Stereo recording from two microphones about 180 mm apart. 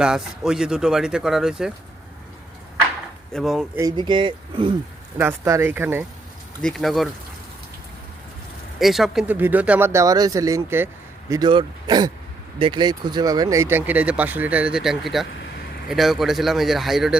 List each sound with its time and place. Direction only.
0.0 s speech: 5° right (ahead or behind)
3.3 s speech: centre (ahead or behind)
3.8 s speech: 20° right (ahead or behind)
5.1 s speech: 15° right (ahead or behind)
6.6 s speech: centre (ahead or behind)
8.8 s speech: centre (ahead or behind)